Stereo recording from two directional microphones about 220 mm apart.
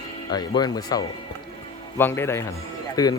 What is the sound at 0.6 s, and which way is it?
Speech, 20° left (ahead or behind).